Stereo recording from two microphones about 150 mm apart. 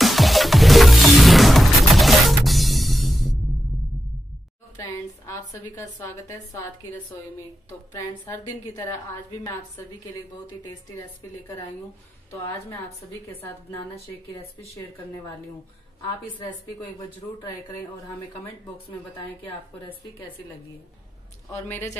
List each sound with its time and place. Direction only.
0.0 s music: centre (ahead or behind)
4.7 s a woman's voice: 20° left (ahead or behind)
7.9 s a woman's voice: 20° left (ahead or behind)
12.3 s a woman's voice: 20° left (ahead or behind)
21.5 s a woman's voice: 15° left (ahead or behind)